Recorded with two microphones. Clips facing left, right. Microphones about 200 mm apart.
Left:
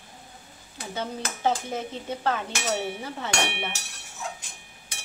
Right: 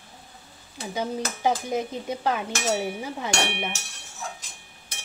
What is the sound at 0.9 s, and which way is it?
A woman's voice, 15° right (ahead or behind).